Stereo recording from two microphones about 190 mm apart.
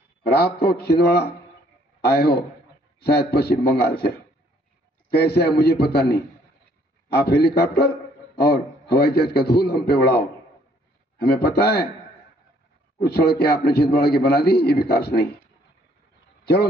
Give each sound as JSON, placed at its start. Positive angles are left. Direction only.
{"t": 0.2, "sound": "a man's voice", "side_deg": 55}
{"t": 5.1, "sound": "a man's voice", "side_deg": 55}
{"t": 13.0, "sound": "a man's voice", "side_deg": 55}